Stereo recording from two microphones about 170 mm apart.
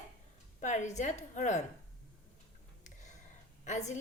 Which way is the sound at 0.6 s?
45° left (ahead or behind).